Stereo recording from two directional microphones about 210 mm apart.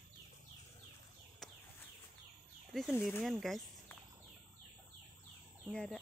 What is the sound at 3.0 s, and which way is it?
Speech, 5° left (ahead or behind).